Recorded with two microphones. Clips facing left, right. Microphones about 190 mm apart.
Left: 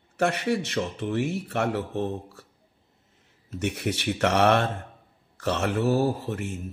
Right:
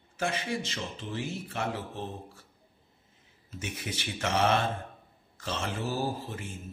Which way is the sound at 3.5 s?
70° left (ahead or behind).